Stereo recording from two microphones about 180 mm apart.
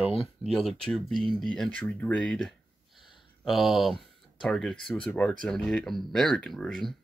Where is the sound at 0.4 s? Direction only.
Centre (ahead or behind).